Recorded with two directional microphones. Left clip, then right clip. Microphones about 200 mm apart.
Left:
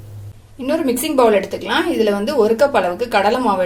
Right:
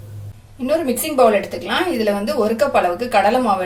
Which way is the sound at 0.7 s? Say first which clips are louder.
Left 1 dB; 35° left (ahead or behind).